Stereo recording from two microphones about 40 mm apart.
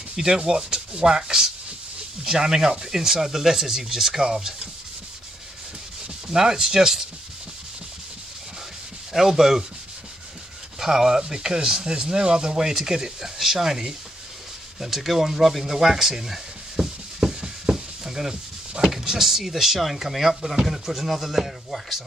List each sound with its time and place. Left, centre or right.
0.1 s speech: centre
6.2 s speech: centre
9.1 s speech: centre
10.8 s speech: centre
14.8 s a sound: centre
18.9 s speech: centre